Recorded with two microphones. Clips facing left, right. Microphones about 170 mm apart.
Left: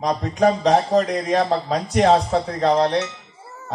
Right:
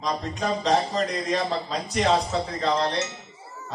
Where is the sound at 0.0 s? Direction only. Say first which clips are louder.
Left 9 dB; 60° left (ahead or behind).